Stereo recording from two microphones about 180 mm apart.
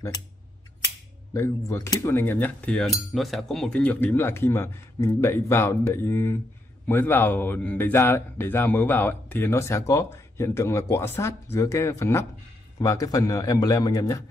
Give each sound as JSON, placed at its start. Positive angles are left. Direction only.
{"t": 1.3, "sound": "a man's voice", "side_deg": 15}